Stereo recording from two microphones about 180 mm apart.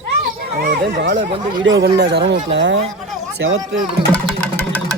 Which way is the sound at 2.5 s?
90° right.